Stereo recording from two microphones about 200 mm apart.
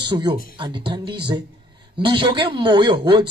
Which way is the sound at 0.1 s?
20° right (ahead or behind).